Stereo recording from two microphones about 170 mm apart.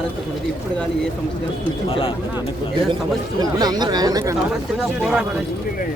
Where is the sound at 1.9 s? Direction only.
30° left (ahead or behind).